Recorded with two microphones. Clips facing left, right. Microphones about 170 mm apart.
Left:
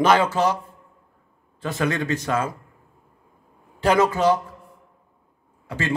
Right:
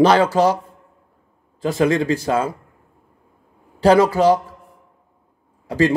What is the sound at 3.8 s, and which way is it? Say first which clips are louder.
Speech: right 5 dB; 35° right (ahead or behind).